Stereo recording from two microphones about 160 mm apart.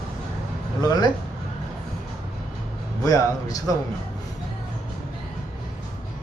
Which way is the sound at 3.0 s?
20° left (ahead or behind).